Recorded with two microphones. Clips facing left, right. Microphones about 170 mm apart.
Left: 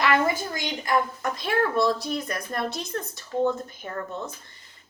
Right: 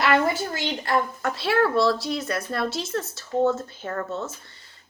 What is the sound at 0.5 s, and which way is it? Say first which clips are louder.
Speech: right 1 dB; 15° left (ahead or behind).